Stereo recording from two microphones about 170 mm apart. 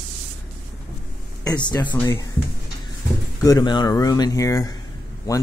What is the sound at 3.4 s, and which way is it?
Speech, 20° left (ahead or behind).